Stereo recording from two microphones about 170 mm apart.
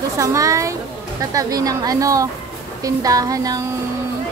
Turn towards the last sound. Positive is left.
turn(degrees=-20)  # may be behind; listen again after turning